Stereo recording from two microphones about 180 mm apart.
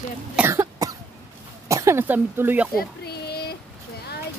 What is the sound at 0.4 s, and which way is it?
Cough, 15° right (ahead or behind).